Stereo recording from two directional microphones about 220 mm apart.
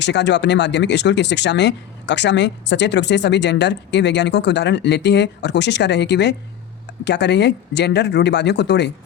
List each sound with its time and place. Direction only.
0.0 s speech: 50° left (ahead or behind)